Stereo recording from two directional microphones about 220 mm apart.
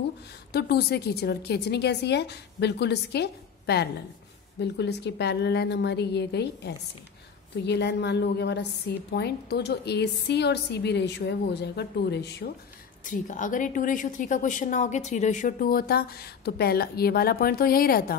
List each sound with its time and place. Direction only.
0.5 s a woman's voice: 45° left (ahead or behind)
13.0 s a woman's voice: 35° left (ahead or behind)